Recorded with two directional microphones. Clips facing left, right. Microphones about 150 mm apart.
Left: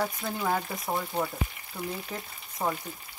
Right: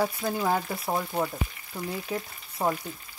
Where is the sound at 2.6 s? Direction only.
15° right (ahead or behind).